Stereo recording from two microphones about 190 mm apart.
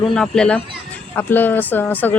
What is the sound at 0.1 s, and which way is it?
A woman's voice, 5° left (ahead or behind).